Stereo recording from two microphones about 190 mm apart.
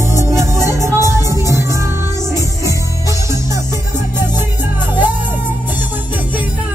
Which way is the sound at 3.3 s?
15° right (ahead or behind).